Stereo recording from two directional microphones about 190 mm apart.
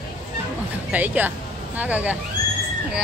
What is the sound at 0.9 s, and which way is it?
Speech, 10° right (ahead or behind).